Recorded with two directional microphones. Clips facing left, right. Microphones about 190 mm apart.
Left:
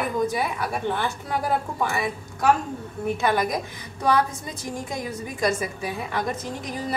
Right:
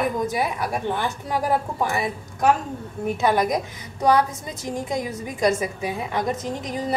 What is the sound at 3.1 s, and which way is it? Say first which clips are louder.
A woman's voice: right 3 dB; 15° right (ahead or behind).